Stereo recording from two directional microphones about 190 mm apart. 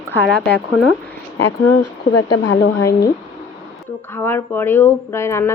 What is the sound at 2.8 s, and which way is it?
Speech, 15° left (ahead or behind).